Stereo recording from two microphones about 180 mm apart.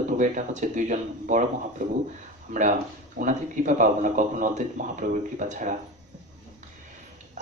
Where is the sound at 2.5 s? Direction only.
45° right (ahead or behind).